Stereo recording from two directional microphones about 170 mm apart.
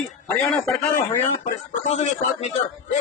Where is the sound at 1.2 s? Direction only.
40° left (ahead or behind).